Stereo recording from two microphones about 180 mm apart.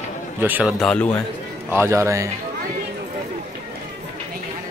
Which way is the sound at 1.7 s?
15° right (ahead or behind).